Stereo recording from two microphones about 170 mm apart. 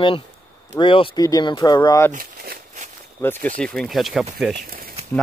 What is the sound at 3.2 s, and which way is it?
Speech, 10° left (ahead or behind).